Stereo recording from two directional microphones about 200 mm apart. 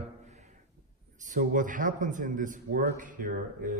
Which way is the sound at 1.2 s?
40° right (ahead or behind).